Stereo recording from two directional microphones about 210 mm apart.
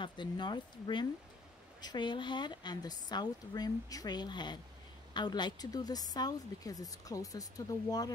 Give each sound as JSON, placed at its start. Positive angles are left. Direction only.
{"t": 0.0, "sound": "a woman's voice", "side_deg": 20}